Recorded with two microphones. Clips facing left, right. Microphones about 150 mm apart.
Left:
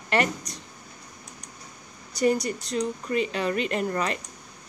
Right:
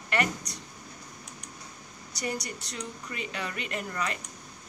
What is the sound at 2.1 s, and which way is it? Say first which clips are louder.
Speech: left 11 dB; 65° right (ahead or behind).